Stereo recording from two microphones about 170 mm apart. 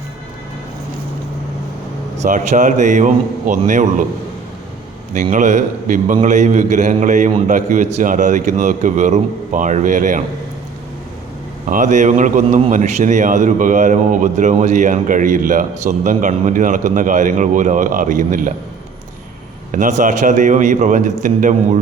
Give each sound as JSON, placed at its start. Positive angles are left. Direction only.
{"t": 2.2, "sound": "a man's voice", "side_deg": -45}
{"t": 5.1, "sound": "a man's voice", "side_deg": -50}
{"t": 11.6, "sound": "a man's voice", "side_deg": -50}
{"t": 19.7, "sound": "a man's voice", "side_deg": -50}